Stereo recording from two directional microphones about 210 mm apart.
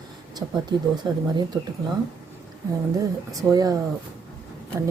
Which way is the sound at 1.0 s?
20° right (ahead or behind).